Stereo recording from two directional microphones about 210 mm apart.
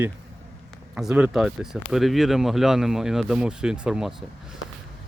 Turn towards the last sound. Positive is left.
turn(degrees=0)  # may be behind; listen again after turning